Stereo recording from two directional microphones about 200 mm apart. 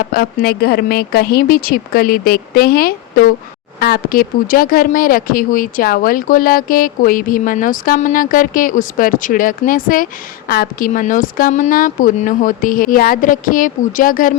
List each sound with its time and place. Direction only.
0.1 s speech: 50° left (ahead or behind)